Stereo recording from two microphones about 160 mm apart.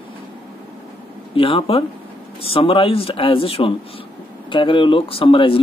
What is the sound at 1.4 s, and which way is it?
Speech, 35° left (ahead or behind).